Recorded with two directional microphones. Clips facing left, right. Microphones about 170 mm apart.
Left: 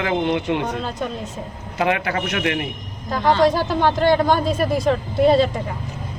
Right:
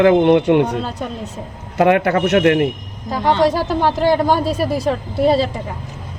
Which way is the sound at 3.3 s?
15° right (ahead or behind).